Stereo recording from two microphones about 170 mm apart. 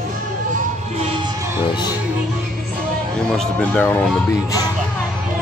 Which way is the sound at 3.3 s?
5° left (ahead or behind).